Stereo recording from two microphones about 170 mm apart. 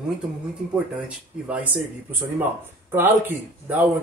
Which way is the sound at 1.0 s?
10° right (ahead or behind).